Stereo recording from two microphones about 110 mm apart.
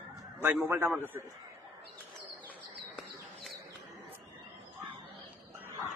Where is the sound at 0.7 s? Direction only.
20° right (ahead or behind).